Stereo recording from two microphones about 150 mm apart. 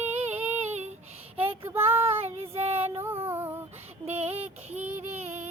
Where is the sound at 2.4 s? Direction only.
40° right (ahead or behind).